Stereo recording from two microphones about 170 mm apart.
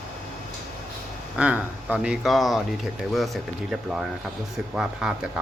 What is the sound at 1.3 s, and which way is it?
Speech, 10° right (ahead or behind).